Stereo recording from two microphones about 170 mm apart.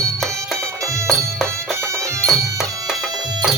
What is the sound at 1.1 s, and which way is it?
Music, 5° left (ahead or behind).